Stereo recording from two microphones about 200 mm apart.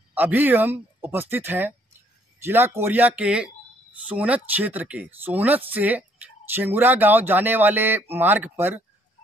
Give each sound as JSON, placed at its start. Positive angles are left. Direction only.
{"t": 0.1, "sound": "speech", "side_deg": -10}